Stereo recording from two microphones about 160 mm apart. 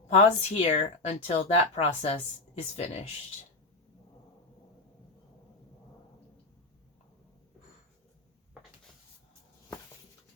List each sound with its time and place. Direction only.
0.1 s speech: 40° left (ahead or behind)